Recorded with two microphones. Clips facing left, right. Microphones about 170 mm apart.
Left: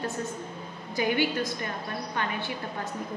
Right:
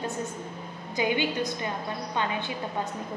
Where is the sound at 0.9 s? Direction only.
20° right (ahead or behind).